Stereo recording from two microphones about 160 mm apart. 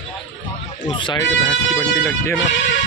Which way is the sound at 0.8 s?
30° left (ahead or behind).